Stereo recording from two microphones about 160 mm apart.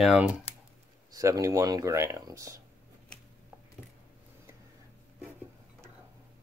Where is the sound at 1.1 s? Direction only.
20° right (ahead or behind).